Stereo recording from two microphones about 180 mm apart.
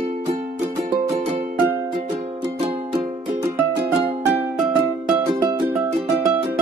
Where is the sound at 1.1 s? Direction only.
30° right (ahead or behind).